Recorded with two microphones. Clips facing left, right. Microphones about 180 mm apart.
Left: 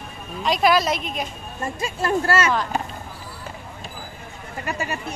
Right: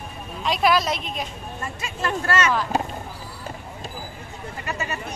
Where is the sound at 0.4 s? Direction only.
Centre (ahead or behind).